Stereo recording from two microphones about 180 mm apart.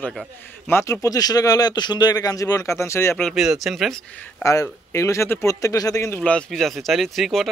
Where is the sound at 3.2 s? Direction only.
Centre (ahead or behind).